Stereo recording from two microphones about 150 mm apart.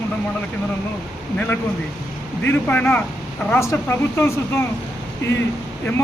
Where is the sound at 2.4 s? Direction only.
10° left (ahead or behind).